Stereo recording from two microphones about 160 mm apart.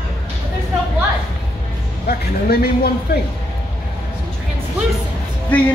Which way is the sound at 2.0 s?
75° left (ahead or behind).